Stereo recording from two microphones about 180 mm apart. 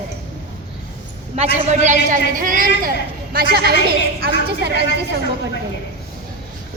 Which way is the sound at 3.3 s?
60° right (ahead or behind).